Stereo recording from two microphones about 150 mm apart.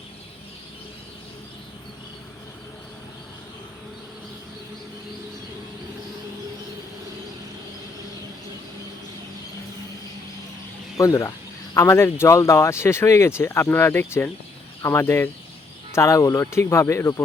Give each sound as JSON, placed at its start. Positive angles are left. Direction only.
{"t": 10.9, "sound": "speech", "side_deg": 20}